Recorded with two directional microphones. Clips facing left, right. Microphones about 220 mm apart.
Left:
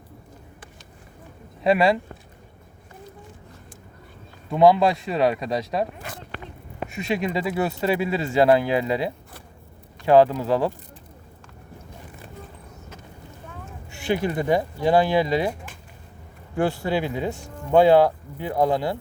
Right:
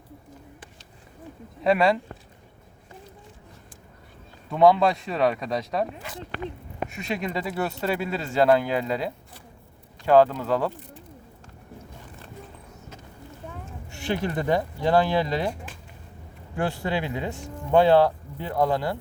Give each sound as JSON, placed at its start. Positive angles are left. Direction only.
{"t": 1.6, "sound": "speech", "side_deg": 10}
{"t": 4.5, "sound": "speech", "side_deg": 10}
{"t": 6.0, "sound": "zipper", "side_deg": 50}
{"t": 6.9, "sound": "speech", "side_deg": 10}
{"t": 13.9, "sound": "speech", "side_deg": 10}
{"t": 16.6, "sound": "speech", "side_deg": 10}